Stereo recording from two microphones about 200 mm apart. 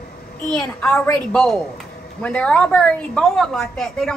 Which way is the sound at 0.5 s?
5° left (ahead or behind).